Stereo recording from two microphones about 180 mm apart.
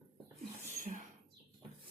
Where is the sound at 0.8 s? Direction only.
45° right (ahead or behind).